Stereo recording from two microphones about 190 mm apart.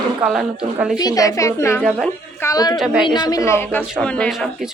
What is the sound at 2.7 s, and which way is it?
Speech, 5° right (ahead or behind).